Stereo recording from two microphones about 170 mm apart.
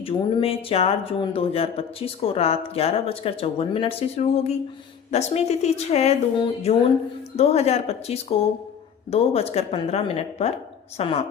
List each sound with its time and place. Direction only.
0.0 s speech: 30° left (ahead or behind)